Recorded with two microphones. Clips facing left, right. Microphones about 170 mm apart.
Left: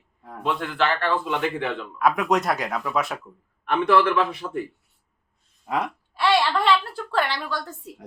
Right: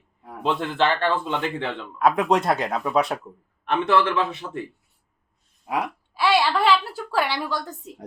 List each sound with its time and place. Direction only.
0.4 s a man's voice: 25° right (ahead or behind)
3.8 s a man's voice: 25° right (ahead or behind)
5.6 s a woman's voice: 10° right (ahead or behind)